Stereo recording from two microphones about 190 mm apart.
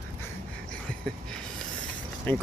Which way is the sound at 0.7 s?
5° left (ahead or behind).